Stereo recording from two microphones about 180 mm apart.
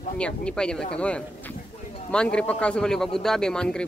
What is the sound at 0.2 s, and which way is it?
Speech, 5° left (ahead or behind).